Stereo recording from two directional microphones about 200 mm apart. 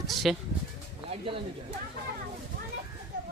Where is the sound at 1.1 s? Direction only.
25° right (ahead or behind).